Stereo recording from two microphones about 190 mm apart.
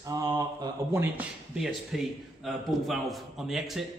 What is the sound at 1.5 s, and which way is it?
A man's voice, centre (ahead or behind).